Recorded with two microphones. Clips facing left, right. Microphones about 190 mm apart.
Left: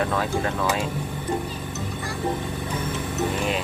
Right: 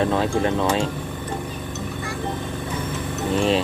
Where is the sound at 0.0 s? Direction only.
25° right (ahead or behind).